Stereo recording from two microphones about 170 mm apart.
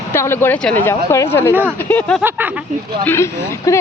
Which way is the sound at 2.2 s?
10° right (ahead or behind).